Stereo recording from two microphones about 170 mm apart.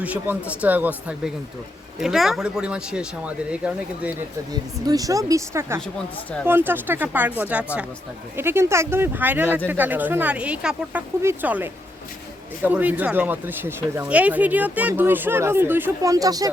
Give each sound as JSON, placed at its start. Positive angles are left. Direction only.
{"t": 0.0, "sound": "speech", "side_deg": -10}
{"t": 4.9, "sound": "speech", "side_deg": -20}